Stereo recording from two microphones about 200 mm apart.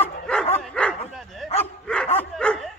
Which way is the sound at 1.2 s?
Centre (ahead or behind).